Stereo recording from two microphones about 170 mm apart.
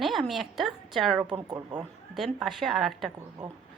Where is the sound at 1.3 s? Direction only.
25° right (ahead or behind).